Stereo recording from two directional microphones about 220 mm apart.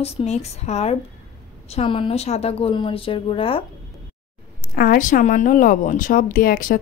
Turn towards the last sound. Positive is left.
turn(degrees=40)  # may be behind; listen again after turning